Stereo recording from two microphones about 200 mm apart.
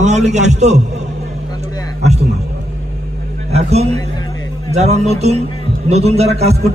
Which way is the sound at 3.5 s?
30° right (ahead or behind).